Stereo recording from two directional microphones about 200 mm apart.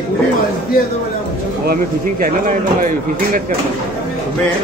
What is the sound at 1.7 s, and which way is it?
Speech, 45° right (ahead or behind).